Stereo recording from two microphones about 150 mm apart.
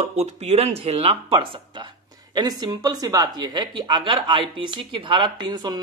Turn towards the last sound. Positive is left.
turn(degrees=-30)  # may be behind; listen again after turning